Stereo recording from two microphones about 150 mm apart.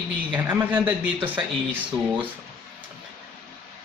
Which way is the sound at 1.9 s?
30° right (ahead or behind).